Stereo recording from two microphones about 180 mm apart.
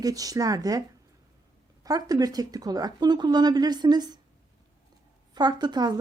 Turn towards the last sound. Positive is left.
turn(degrees=-25)  # may be behind; listen again after turning